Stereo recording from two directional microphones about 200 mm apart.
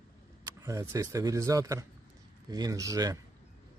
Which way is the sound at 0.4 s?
15° right (ahead or behind).